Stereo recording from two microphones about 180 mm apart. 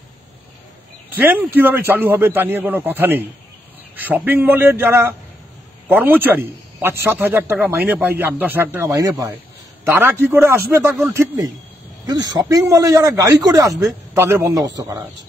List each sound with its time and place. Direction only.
1.1 s a man's voice: 10° right (ahead or behind)